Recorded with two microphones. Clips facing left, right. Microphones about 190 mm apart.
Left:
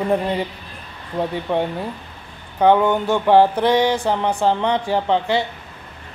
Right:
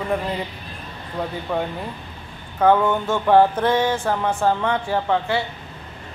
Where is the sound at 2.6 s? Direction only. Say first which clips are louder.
Left 2 dB; 15° left (ahead or behind).